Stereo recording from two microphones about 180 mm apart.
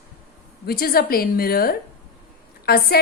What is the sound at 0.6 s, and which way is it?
A woman's voice, 55° left (ahead or behind).